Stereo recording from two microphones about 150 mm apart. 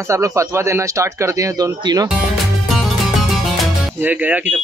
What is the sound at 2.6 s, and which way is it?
Music, centre (ahead or behind).